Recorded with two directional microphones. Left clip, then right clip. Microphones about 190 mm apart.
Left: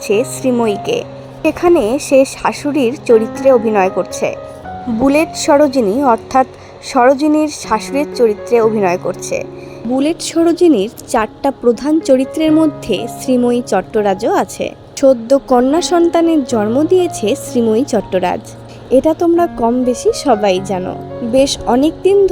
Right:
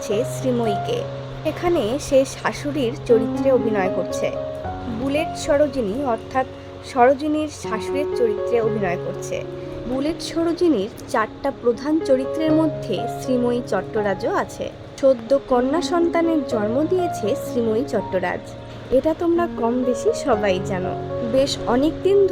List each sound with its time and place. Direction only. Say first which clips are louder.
0.1 s a woman's voice: left 8 dB; 30° left (ahead or behind)